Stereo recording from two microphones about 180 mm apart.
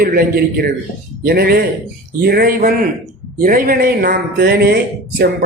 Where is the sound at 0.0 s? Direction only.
55° right (ahead or behind).